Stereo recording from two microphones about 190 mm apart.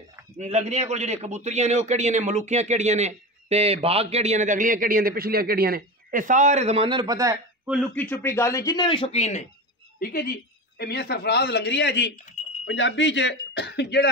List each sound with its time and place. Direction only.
0.4 s a man's voice: 35° right (ahead or behind); by 7.7 s 15° right (ahead or behind)
7.7 s a man's voice: 5° left (ahead or behind); by 9.5 s 35° left (ahead or behind)
9.9 s a woman's voice: 50° left (ahead or behind)